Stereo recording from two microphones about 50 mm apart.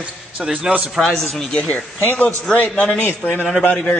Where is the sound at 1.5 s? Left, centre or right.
Left.